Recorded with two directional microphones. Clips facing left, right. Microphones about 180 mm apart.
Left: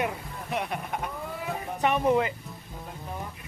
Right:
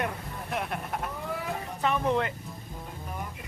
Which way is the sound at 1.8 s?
15° left (ahead or behind).